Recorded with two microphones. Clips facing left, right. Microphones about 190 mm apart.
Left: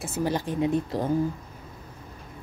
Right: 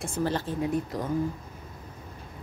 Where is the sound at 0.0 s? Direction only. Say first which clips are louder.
Left 1 dB; 10° left (ahead or behind); by 1.1 s 25° left (ahead or behind).